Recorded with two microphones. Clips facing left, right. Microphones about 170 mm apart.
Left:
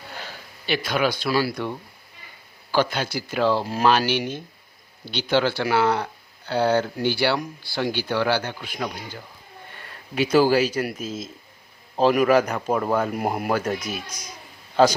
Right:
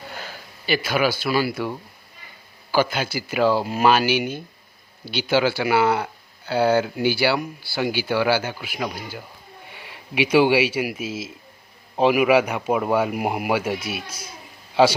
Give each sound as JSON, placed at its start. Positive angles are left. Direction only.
{"t": 0.2, "sound": "speech", "side_deg": 0}
{"t": 9.6, "sound": "a sound", "side_deg": -10}
{"t": 10.5, "sound": "a man's voice", "side_deg": -10}